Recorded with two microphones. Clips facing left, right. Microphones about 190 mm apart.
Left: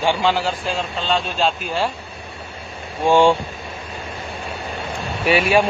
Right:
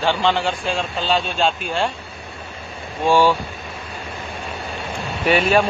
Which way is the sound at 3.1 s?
25° left (ahead or behind).